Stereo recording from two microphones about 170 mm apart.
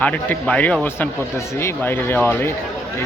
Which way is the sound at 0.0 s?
10° left (ahead or behind).